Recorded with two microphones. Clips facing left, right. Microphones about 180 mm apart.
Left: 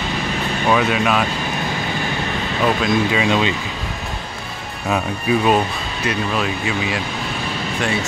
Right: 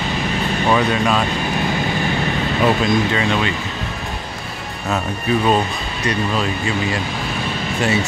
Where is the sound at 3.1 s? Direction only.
15° left (ahead or behind).